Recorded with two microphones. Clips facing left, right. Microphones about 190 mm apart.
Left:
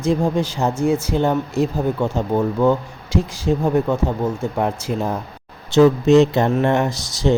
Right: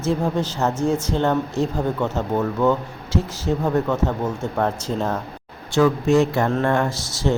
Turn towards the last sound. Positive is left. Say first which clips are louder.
# left 3 dB
turn(degrees=15)  # may be behind; listen again after turning